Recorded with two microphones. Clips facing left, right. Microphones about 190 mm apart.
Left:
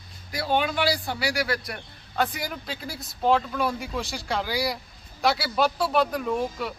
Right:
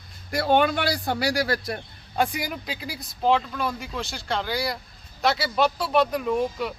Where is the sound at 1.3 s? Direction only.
35° right (ahead or behind).